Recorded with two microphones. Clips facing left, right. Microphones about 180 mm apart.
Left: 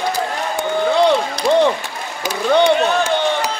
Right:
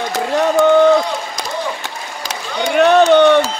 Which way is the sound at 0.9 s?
70° left (ahead or behind).